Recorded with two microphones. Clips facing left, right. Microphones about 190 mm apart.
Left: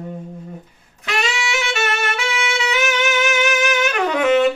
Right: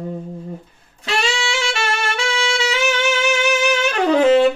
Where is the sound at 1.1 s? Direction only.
30° right (ahead or behind).